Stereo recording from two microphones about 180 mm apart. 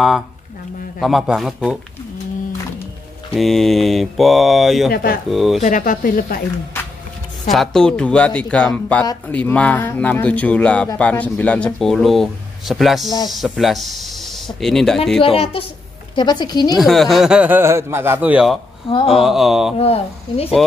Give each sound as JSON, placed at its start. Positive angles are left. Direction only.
{"t": 1.0, "sound": "speech", "side_deg": 0}
{"t": 3.3, "sound": "speech", "side_deg": 0}
{"t": 4.9, "sound": "speech", "side_deg": 55}
{"t": 5.3, "sound": "speech", "side_deg": 0}
{"t": 5.6, "sound": "speech", "side_deg": 45}
{"t": 7.5, "sound": "speech", "side_deg": 0}
{"t": 15.2, "sound": "a woman's voice", "side_deg": 30}
{"t": 16.7, "sound": "a man's voice", "side_deg": 0}
{"t": 18.9, "sound": "a woman's voice", "side_deg": 30}
{"t": 19.1, "sound": "speech", "side_deg": 0}
{"t": 19.8, "sound": "speech", "side_deg": 35}